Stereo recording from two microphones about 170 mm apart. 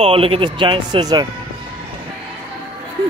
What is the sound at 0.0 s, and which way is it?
Speech, 35° right (ahead or behind).